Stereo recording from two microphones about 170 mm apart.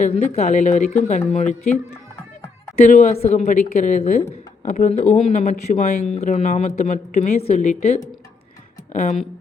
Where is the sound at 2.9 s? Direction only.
45° left (ahead or behind).